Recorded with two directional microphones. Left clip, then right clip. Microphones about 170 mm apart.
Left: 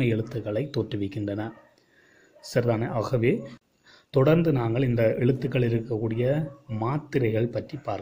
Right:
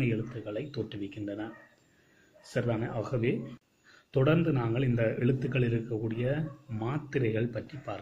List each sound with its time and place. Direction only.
0.0 s a man's voice: 35° left (ahead or behind)
2.5 s a man's voice: 35° left (ahead or behind)